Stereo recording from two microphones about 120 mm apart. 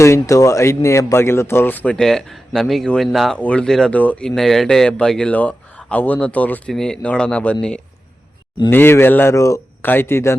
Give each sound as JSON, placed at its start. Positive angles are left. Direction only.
{"t": 0.0, "sound": "speech", "side_deg": 25}